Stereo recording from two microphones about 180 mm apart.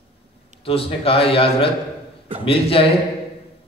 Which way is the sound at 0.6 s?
30° left (ahead or behind).